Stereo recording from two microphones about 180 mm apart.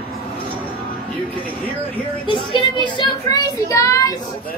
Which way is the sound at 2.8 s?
25° left (ahead or behind).